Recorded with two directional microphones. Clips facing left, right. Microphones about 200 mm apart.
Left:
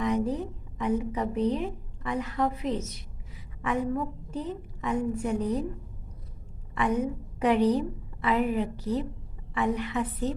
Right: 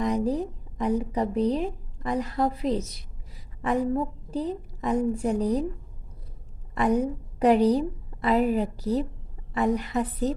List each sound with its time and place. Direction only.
0.0 s speech: 35° right (ahead or behind)
6.7 s a woman's voice: 35° right (ahead or behind)